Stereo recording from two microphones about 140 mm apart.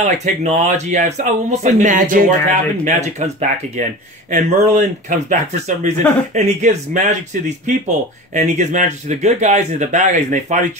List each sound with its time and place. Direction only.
0.0 s speech: 55° right (ahead or behind)
2.8 s speech: 55° right (ahead or behind)